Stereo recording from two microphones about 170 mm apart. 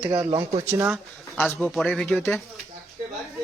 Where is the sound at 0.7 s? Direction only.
15° right (ahead or behind).